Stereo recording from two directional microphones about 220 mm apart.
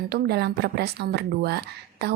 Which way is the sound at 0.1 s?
45° right (ahead or behind).